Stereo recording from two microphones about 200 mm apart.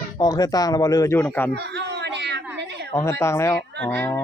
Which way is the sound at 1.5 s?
55° right (ahead or behind).